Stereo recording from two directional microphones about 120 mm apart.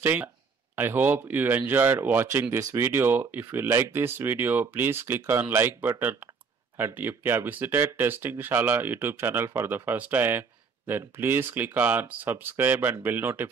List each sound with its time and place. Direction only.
0.0 s speech: 15° right (ahead or behind)